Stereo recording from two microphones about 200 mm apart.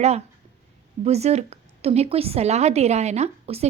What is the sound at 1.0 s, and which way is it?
A woman's voice, 30° right (ahead or behind).